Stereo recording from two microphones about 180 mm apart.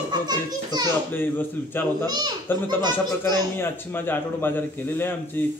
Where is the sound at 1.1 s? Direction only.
10° left (ahead or behind).